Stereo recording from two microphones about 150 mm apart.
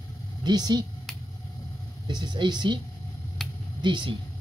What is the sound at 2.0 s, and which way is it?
Speech, 30° right (ahead or behind).